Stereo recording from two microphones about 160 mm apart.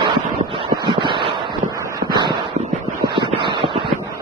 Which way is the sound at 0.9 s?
30° right (ahead or behind).